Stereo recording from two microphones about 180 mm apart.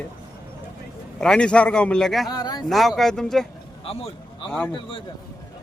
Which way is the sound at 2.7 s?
Centre (ahead or behind).